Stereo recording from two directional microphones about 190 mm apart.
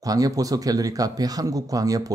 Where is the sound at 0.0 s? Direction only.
20° right (ahead or behind).